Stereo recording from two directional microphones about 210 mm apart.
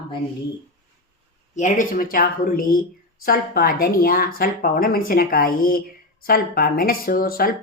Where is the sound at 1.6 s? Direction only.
40° left (ahead or behind).